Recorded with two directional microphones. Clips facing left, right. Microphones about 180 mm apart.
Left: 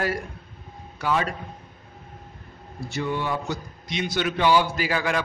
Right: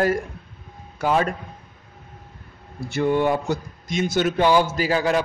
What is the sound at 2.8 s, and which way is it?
A man's voice, 55° right (ahead or behind).